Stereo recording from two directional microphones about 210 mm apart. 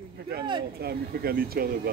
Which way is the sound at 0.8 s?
45° right (ahead or behind).